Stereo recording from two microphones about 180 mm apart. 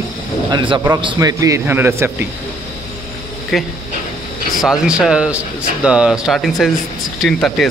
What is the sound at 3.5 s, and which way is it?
Speech, centre (ahead or behind).